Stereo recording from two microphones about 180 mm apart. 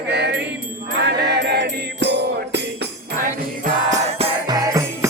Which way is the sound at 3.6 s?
40° right (ahead or behind).